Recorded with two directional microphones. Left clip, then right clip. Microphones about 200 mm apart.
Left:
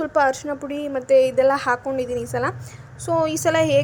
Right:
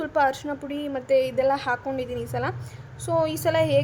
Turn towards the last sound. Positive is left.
turn(degrees=5)  # may be behind; listen again after turning